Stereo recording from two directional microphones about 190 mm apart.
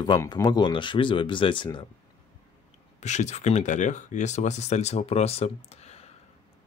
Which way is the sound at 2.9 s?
40° left (ahead or behind).